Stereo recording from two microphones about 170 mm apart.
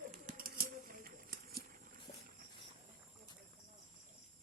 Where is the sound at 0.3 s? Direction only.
60° right (ahead or behind).